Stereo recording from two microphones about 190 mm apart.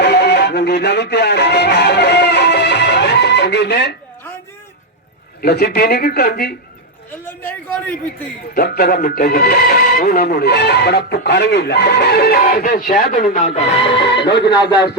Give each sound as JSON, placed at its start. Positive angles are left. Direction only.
{"t": 0.0, "sound": "music", "side_deg": 60}
{"t": 5.4, "sound": "speech", "side_deg": 55}
{"t": 7.3, "sound": "a sound", "side_deg": 10}
{"t": 8.5, "sound": "speech", "side_deg": 55}
{"t": 14.1, "sound": "speech", "side_deg": 65}